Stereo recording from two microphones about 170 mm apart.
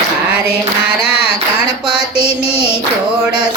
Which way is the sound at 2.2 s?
15° left (ahead or behind).